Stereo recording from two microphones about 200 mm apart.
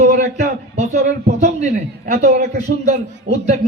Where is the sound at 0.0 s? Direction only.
35° right (ahead or behind).